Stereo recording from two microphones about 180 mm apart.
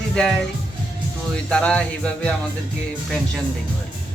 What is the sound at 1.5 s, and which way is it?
Speech, 5° left (ahead or behind).